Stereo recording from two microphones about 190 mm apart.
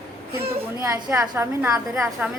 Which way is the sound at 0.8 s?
15° right (ahead or behind).